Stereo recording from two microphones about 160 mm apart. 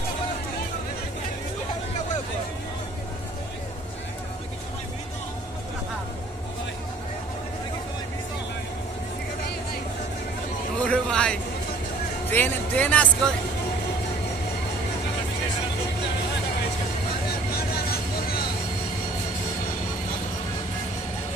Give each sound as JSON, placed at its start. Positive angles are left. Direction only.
{"t": 10.8, "sound": "a sound", "side_deg": 5}
{"t": 12.3, "sound": "music", "side_deg": 10}
{"t": 17.6, "sound": "vehicle", "side_deg": 70}